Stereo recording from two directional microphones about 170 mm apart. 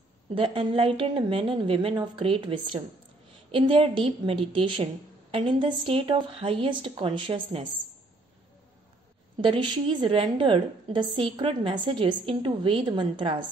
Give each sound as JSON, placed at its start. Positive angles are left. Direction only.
{"t": 0.3, "sound": "a woman's voice", "side_deg": -30}
{"t": 9.4, "sound": "a woman's voice", "side_deg": -30}